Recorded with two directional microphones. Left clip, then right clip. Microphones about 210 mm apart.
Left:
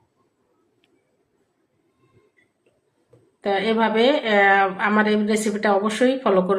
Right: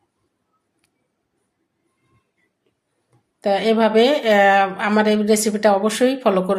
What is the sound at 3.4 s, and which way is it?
Speech, 40° right (ahead or behind).